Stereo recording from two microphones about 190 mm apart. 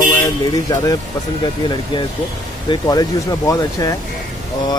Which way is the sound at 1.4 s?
25° left (ahead or behind).